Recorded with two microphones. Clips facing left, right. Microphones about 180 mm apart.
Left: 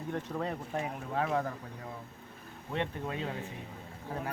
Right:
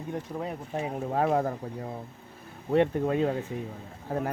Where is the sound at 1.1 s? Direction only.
40° right (ahead or behind).